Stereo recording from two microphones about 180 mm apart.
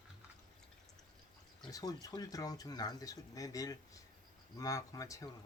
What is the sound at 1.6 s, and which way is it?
Speech, 20° left (ahead or behind).